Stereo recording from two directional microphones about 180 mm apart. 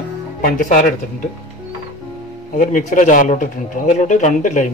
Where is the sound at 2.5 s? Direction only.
50° left (ahead or behind).